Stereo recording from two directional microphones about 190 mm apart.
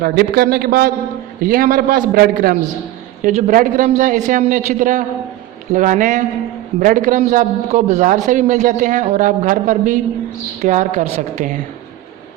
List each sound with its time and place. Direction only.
0.0 s a man's voice: 55° right (ahead or behind)